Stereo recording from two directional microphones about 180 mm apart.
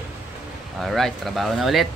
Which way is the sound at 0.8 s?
Centre (ahead or behind).